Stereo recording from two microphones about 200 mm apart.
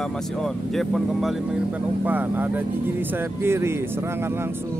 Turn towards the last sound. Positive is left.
turn(degrees=-10)  # may be behind; listen again after turning